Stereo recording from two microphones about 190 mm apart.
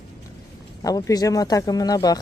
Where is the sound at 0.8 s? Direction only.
20° left (ahead or behind).